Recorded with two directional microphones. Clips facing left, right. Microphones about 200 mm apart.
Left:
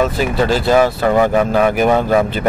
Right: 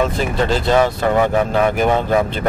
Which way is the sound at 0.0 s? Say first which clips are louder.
Left 2 dB; 5° left (ahead or behind).